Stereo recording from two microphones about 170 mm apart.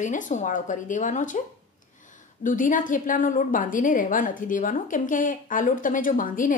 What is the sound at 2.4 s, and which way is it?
A woman's voice, 50° left (ahead or behind).